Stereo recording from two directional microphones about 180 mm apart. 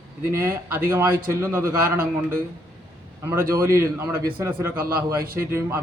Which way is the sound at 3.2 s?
15° right (ahead or behind).